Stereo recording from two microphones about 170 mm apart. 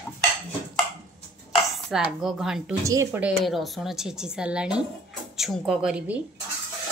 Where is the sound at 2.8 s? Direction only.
15° right (ahead or behind).